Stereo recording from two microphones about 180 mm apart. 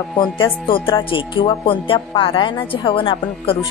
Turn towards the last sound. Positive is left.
turn(degrees=30)  # may be behind; listen again after turning